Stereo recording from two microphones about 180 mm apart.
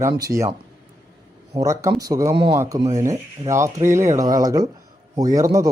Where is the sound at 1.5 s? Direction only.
15° right (ahead or behind).